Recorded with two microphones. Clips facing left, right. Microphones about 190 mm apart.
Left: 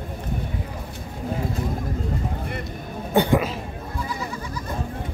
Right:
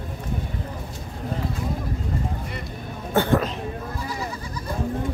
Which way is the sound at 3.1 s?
15° left (ahead or behind).